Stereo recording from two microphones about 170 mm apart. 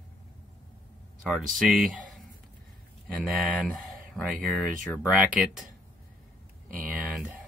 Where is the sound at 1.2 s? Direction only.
Centre (ahead or behind).